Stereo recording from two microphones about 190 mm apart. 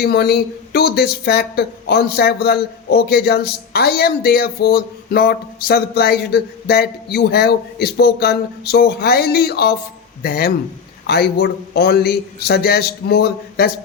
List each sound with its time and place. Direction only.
0.0 s speech: 55° left (ahead or behind)